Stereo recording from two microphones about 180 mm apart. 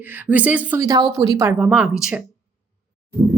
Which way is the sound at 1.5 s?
5° right (ahead or behind).